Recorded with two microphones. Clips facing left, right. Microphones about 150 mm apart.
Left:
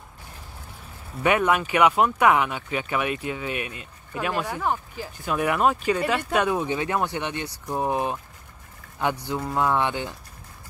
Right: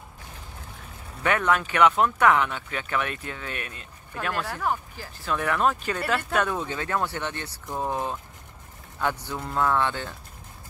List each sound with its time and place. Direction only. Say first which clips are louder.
1.2 s speech: left 3 dB; 10° left (ahead or behind)